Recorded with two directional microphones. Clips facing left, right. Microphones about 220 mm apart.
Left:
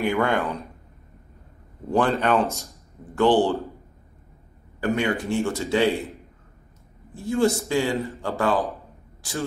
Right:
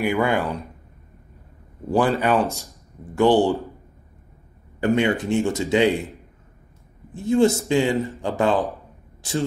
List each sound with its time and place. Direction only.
0.0 s speech: 5° right (ahead or behind)
1.9 s speech: 5° right (ahead or behind)
4.7 s speech: 25° right (ahead or behind)
7.2 s speech: 20° right (ahead or behind)